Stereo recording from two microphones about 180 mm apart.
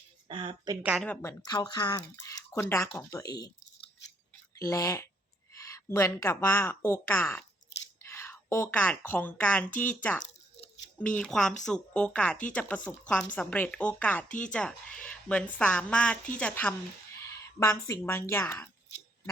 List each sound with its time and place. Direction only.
0.3 s a woman's voice: 30° right (ahead or behind)
0.8 s a woman's voice: 5° right (ahead or behind)
1.0 s a woman's voice: 10° left (ahead or behind)
4.5 s a woman's voice: 20° left (ahead or behind)
17.2 s a sound: 15° left (ahead or behind)
17.8 s a woman's voice: 15° left (ahead or behind)